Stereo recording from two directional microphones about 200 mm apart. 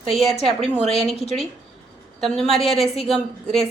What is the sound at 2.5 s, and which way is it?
A woman's voice, centre (ahead or behind).